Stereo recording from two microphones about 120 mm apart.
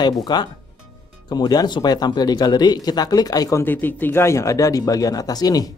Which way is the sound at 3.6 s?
15° left (ahead or behind).